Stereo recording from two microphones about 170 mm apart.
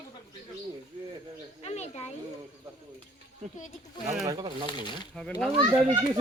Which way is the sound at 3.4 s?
45° right (ahead or behind).